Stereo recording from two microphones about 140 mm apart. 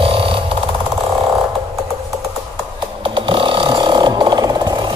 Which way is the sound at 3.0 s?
40° right (ahead or behind).